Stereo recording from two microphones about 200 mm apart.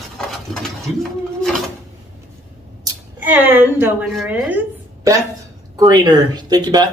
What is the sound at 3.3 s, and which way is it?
Speech, 10° right (ahead or behind).